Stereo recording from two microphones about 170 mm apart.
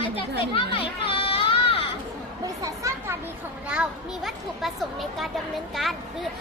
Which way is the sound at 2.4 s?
20° right (ahead or behind).